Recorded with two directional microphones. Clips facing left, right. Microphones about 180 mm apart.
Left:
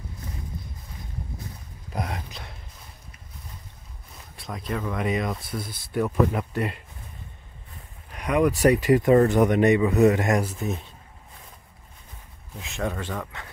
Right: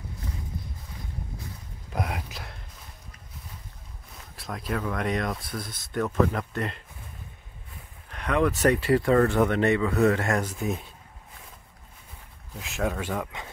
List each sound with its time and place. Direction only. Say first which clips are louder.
2.0 s speech: even; 5° right (ahead or behind)
4.4 s speech: even; centre (ahead or behind)
8.1 s speech: left 3 dB; 10° left (ahead or behind)
10.5 s speech: even; centre (ahead or behind)
12.5 s speech: right 1 dB; centre (ahead or behind)